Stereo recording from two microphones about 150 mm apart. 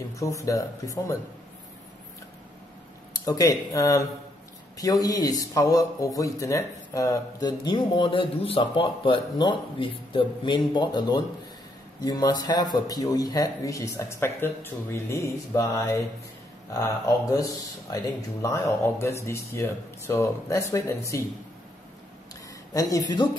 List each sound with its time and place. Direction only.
0.1 s speech: 20° left (ahead or behind)
3.3 s speech: 25° left (ahead or behind)
22.8 s speech: 25° left (ahead or behind)